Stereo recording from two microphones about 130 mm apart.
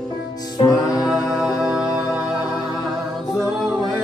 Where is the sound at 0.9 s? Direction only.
Centre (ahead or behind).